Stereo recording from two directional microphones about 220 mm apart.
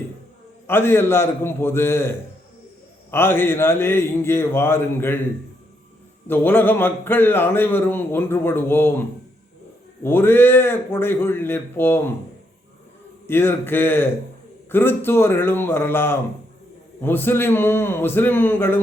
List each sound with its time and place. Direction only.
0.7 s a man's voice: 10° left (ahead or behind)
6.2 s a man's voice: 10° left (ahead or behind)
13.2 s a man's voice: 10° left (ahead or behind)